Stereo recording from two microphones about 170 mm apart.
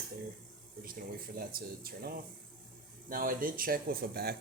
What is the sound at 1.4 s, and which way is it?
Speech, 60° right (ahead or behind).